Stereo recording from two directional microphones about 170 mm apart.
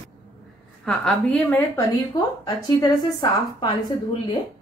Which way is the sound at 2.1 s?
25° left (ahead or behind).